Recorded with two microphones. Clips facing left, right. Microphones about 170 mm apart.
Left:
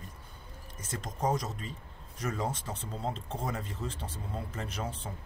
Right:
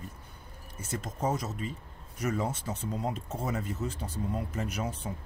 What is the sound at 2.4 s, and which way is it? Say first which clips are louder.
Speech: right 2 dB; 30° left (ahead or behind).